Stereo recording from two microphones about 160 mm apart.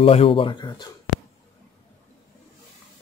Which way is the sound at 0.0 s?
35° left (ahead or behind).